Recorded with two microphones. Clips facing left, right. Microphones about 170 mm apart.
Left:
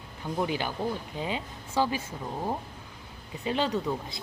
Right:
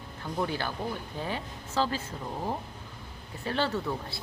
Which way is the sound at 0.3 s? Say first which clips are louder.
Left 2 dB; 15° left (ahead or behind).